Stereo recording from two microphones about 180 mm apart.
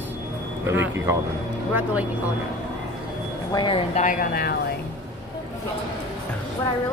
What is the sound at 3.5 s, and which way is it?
Speech, 30° left (ahead or behind).